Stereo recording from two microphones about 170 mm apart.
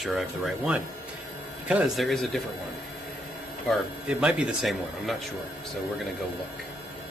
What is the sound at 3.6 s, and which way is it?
Speech, centre (ahead or behind).